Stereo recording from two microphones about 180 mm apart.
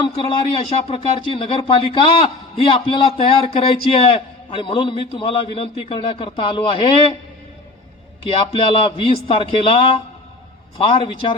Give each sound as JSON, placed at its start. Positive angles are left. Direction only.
{"t": 0.0, "sound": "speech", "side_deg": 30}
{"t": 8.3, "sound": "a man's voice", "side_deg": 30}
{"t": 11.0, "sound": "speech", "side_deg": 30}